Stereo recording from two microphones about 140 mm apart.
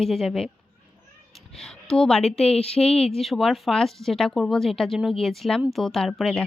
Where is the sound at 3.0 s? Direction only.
Centre (ahead or behind).